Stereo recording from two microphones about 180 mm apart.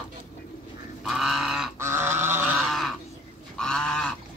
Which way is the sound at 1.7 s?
15° right (ahead or behind).